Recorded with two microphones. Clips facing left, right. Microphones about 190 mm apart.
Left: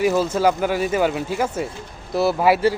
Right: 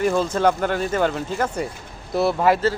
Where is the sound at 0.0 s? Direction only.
5° left (ahead or behind).